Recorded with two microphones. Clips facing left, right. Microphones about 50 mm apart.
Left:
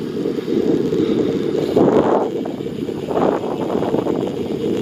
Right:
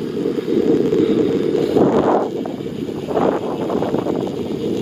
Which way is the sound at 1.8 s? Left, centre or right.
Centre.